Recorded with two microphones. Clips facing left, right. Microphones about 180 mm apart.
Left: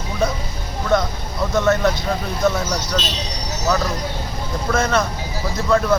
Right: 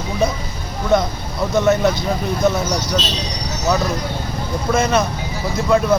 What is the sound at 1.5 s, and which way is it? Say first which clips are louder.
Speech: right 2 dB; 15° right (ahead or behind).